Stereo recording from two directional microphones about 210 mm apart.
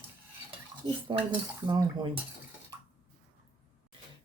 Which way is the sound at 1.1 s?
25° right (ahead or behind).